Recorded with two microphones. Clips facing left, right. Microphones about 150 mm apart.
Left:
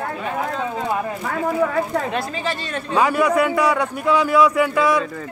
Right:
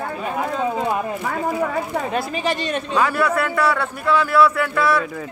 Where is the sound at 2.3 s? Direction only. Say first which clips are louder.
Right 3 dB; 15° right (ahead or behind).